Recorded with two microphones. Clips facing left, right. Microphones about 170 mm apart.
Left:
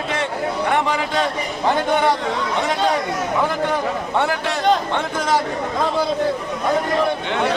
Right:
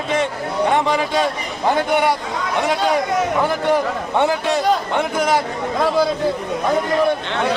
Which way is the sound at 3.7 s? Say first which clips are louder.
Right 3 dB; 15° right (ahead or behind).